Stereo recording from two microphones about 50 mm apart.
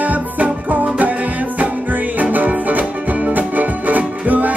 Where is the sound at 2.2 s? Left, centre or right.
Right.